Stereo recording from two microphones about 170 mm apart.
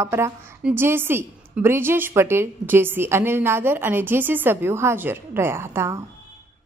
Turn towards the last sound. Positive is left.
turn(degrees=-15)  # may be behind; listen again after turning